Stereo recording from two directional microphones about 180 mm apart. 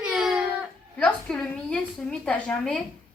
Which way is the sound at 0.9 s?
5° left (ahead or behind).